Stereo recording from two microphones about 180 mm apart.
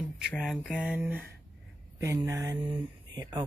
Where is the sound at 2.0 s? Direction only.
15° right (ahead or behind).